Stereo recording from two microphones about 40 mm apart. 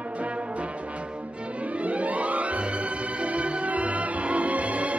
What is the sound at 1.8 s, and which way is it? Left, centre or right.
Music, right.